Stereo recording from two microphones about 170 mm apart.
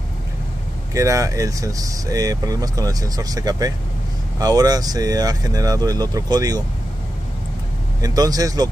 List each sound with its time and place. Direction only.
0.9 s speech: 20° right (ahead or behind)
8.0 s speech: 20° right (ahead or behind)